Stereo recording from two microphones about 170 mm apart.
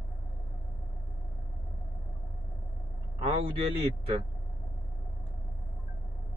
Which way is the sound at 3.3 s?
35° right (ahead or behind).